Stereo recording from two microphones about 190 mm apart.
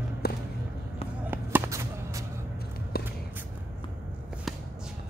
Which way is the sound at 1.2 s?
10° right (ahead or behind).